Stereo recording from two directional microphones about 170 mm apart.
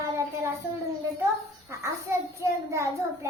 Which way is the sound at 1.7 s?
15° right (ahead or behind).